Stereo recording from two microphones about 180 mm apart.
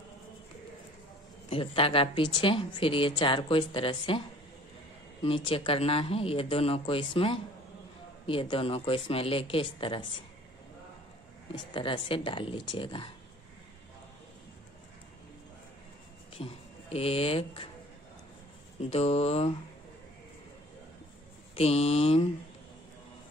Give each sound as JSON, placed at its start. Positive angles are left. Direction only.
{"t": 1.5, "sound": "a woman's voice", "side_deg": 30}
{"t": 5.2, "sound": "speech", "side_deg": 30}
{"t": 11.5, "sound": "a woman's voice", "side_deg": 25}
{"t": 16.3, "sound": "speech", "side_deg": 35}
{"t": 18.8, "sound": "speech", "side_deg": 35}
{"t": 21.5, "sound": "speech", "side_deg": 35}